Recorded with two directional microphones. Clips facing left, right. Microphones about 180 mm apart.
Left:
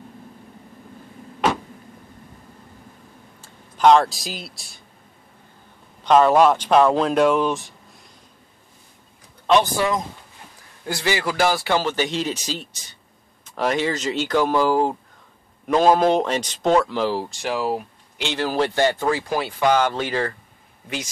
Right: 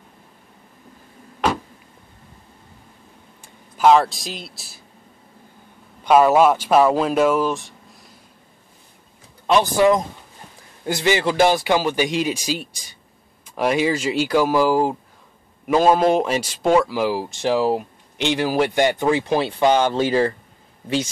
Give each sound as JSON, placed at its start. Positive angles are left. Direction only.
{"t": 3.4, "sound": "speech", "side_deg": -5}
{"t": 6.0, "sound": "speech", "side_deg": -10}
{"t": 9.6, "sound": "speech", "side_deg": -20}
{"t": 17.4, "sound": "speech", "side_deg": -30}